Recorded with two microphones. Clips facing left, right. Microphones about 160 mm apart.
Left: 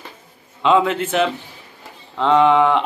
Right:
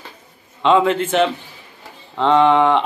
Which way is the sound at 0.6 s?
5° left (ahead or behind).